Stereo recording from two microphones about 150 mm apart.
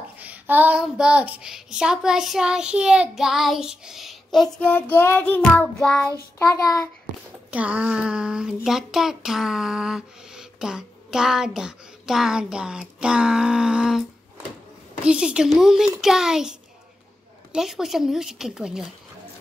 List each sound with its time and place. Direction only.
0.2 s child singing: 10° right (ahead or behind); by 5.9 s 5° left (ahead or behind)
6.3 s a child's voice: 20° left (ahead or behind)
7.5 s a sound: 10° right (ahead or behind)
8.6 s child singing: centre (ahead or behind)
15.0 s child singing: 5° right (ahead or behind)